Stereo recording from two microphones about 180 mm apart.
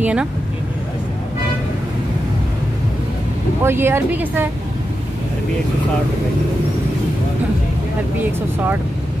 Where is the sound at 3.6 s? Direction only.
15° right (ahead or behind).